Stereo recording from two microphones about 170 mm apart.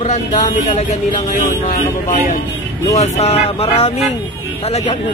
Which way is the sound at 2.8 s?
40° left (ahead or behind).